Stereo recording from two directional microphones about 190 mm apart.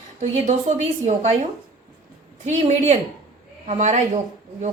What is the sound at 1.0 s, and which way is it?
Speech, 35° right (ahead or behind).